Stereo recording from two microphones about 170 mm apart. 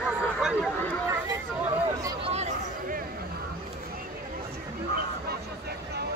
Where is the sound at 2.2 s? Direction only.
40° right (ahead or behind).